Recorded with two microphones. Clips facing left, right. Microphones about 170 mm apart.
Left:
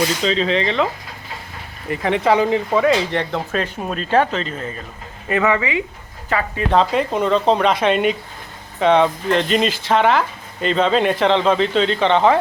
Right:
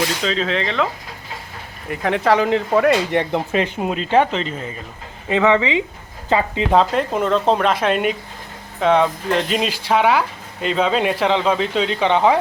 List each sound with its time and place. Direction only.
0.2 s speech: centre (ahead or behind)
1.9 s speech: centre (ahead or behind); by 6.7 s 20° right (ahead or behind)
6.7 s speech: centre (ahead or behind)